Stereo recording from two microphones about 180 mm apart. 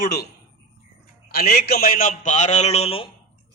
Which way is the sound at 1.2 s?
60° left (ahead or behind).